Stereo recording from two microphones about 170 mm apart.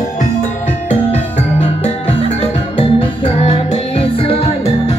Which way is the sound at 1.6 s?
40° left (ahead or behind).